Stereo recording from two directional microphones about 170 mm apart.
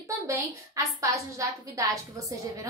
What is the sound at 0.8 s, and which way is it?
A woman's voice, 20° right (ahead or behind).